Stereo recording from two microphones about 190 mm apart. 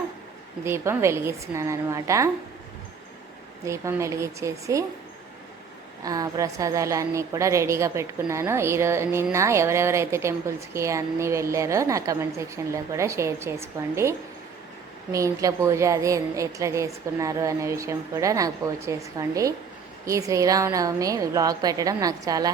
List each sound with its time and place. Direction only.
0.6 s a woman's voice: 15° right (ahead or behind)
3.7 s a woman's voice: 15° right (ahead or behind)
6.0 s a woman's voice: 20° right (ahead or behind)